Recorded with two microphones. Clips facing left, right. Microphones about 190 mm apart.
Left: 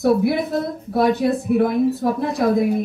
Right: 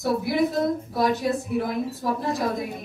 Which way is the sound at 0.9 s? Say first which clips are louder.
Left 6 dB; 60° left (ahead or behind).